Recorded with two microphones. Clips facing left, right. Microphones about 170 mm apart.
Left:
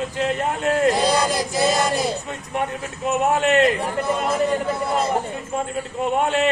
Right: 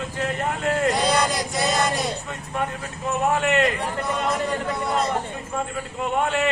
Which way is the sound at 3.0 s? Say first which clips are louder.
Left 3 dB; 20° left (ahead or behind).